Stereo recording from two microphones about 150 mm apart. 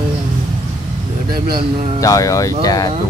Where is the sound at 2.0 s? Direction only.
20° left (ahead or behind).